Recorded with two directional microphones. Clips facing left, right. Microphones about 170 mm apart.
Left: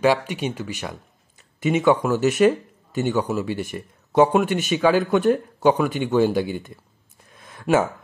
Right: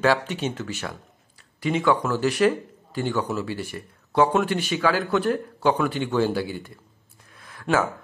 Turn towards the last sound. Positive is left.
turn(degrees=25)  # may be behind; listen again after turning